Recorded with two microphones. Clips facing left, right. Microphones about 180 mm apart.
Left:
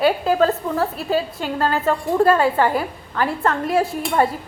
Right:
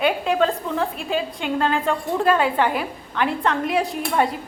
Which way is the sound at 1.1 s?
40° left (ahead or behind).